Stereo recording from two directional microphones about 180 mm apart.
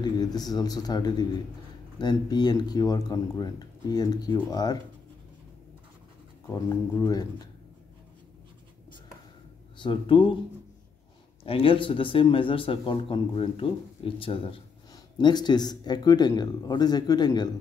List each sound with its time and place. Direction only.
0.0 s a man's voice: 20° left (ahead or behind)
6.4 s a man's voice: 20° left (ahead or behind)
9.8 s a man's voice: 30° left (ahead or behind)
11.4 s a man's voice: 30° left (ahead or behind)